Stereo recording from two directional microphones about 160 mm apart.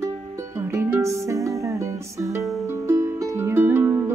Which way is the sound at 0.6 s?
15° right (ahead or behind).